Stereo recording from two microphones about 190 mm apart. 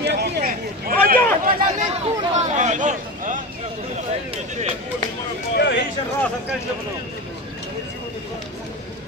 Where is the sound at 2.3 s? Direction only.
40° right (ahead or behind).